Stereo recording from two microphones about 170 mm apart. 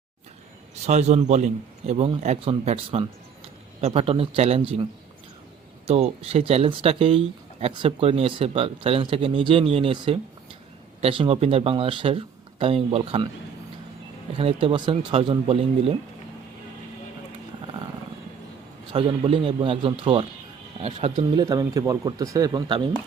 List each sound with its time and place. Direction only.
0.9 s speech: 40° right (ahead or behind)
5.9 s speech: 35° right (ahead or behind)
14.3 s speech: 30° right (ahead or behind)
18.9 s speech: 30° right (ahead or behind)
21.3 s speech: 20° right (ahead or behind)